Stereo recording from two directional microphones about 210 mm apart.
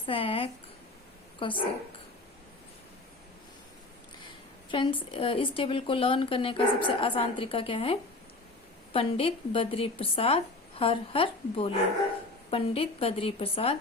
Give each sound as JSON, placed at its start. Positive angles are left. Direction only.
{"t": 0.0, "sound": "a woman's voice", "side_deg": 25}
{"t": 4.7, "sound": "speech", "side_deg": 25}